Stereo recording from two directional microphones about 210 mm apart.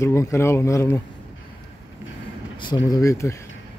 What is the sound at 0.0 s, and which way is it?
Speech, 15° left (ahead or behind).